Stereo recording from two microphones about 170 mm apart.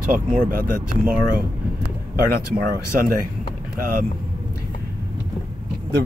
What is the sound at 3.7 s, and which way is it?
Speech, 55° right (ahead or behind).